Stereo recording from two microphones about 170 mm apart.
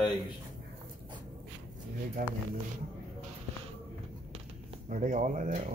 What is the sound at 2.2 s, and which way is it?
Speech, 55° right (ahead or behind).